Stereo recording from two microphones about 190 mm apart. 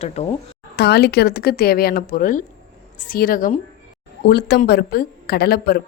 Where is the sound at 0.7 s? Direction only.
55° left (ahead or behind).